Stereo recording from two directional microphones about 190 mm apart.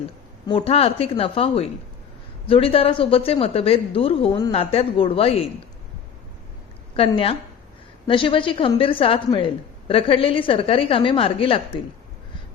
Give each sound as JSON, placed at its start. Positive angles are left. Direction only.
{"t": 0.4, "sound": "a woman's voice", "side_deg": 30}
{"t": 6.9, "sound": "a woman's voice", "side_deg": 30}